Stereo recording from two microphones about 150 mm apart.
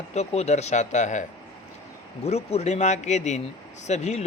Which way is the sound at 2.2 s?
45° left (ahead or behind).